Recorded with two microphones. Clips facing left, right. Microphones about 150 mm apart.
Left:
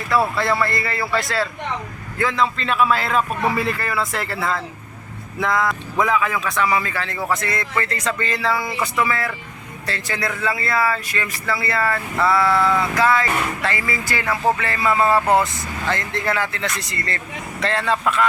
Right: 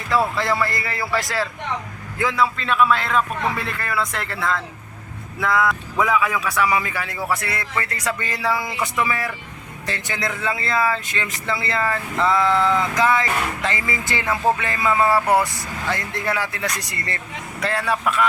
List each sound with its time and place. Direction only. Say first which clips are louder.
0.1 s a man's voice: left 1 dB; 15° right (ahead or behind)